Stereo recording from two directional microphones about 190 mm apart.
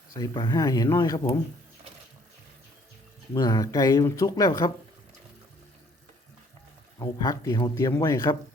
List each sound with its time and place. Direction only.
0.2 s speech: 20° left (ahead or behind)
3.3 s speech: 20° left (ahead or behind)
7.0 s speech: 15° left (ahead or behind)